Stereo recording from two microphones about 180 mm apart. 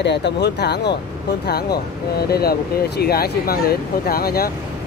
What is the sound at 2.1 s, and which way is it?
Speech, 60° left (ahead or behind).